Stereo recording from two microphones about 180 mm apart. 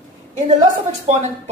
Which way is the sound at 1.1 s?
35° right (ahead or behind).